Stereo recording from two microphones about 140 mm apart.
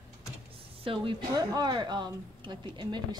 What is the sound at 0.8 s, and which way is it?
A woman's voice, 35° right (ahead or behind).